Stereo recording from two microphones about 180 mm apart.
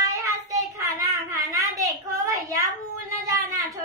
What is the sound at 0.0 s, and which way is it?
Child singing, 20° right (ahead or behind).